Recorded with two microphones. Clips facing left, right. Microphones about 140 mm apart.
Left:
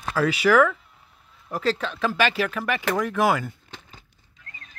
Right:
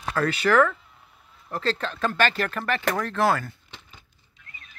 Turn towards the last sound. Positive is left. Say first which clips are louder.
# left 3 dB
turn(degrees=35)  # may be behind; listen again after turning